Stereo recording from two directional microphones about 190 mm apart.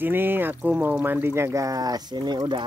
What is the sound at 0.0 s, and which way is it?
Speech, 10° right (ahead or behind).